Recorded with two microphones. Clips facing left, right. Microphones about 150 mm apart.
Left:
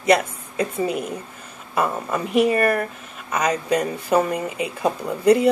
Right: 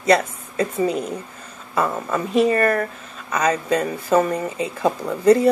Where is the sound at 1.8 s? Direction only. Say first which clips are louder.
Right 1 dB; 15° left (ahead or behind).